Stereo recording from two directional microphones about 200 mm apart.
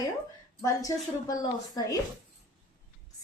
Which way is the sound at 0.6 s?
15° left (ahead or behind).